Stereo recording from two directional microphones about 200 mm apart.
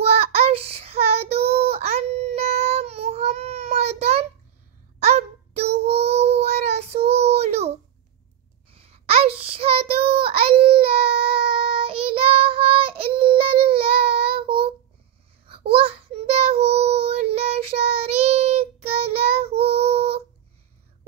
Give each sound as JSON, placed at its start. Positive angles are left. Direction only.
{"t": 0.0, "sound": "child singing", "side_deg": -30}
{"t": 8.7, "sound": "child singing", "side_deg": -30}